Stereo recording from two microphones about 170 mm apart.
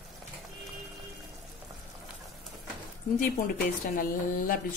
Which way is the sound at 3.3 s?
55° left (ahead or behind).